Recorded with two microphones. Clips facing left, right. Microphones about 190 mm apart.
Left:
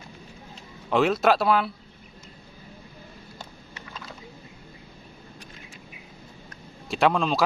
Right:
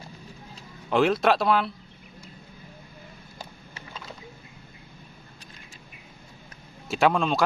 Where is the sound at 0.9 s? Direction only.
Centre (ahead or behind).